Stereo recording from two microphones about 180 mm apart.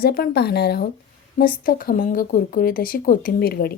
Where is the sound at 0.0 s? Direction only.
60° left (ahead or behind).